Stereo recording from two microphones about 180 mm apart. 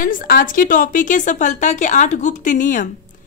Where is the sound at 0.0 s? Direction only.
50° left (ahead or behind).